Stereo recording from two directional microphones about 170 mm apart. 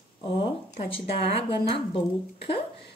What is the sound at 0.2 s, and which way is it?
Speech, 30° left (ahead or behind).